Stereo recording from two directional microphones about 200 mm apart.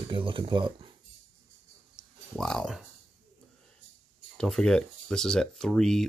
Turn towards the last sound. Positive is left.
turn(degrees=5)  # may be behind; listen again after turning